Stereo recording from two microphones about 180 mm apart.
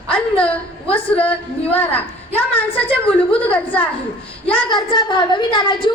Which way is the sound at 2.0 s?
10° left (ahead or behind).